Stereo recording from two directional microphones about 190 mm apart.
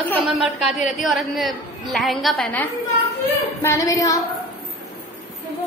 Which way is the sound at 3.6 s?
15° left (ahead or behind).